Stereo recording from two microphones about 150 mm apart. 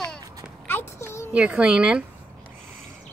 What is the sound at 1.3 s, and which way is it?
Speech, 5° right (ahead or behind).